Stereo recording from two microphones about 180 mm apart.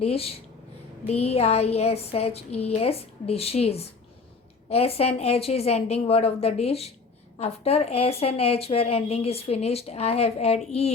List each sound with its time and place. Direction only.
0.0 s a woman's voice: 35° left (ahead or behind)